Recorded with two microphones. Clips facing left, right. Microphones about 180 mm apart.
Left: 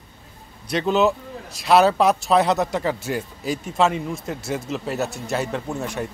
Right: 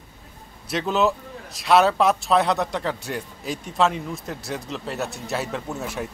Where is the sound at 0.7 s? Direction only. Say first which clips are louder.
Left 3 dB; centre (ahead or behind).